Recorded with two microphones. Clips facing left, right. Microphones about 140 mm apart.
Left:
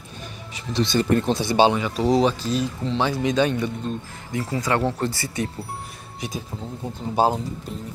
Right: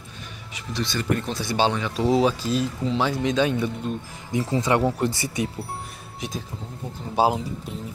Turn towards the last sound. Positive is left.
turn(degrees=0)  # may be behind; listen again after turning